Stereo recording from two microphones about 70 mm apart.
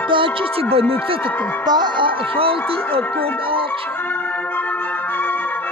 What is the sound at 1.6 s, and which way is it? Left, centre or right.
Speech, right.